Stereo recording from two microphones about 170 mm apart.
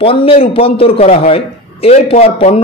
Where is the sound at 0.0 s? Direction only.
35° left (ahead or behind).